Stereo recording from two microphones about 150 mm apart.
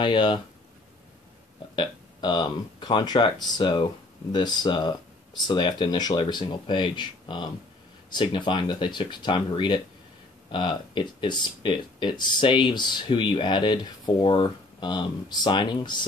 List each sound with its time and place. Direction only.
0.0 s speech: 30° left (ahead or behind)
1.8 s speech: 30° left (ahead or behind)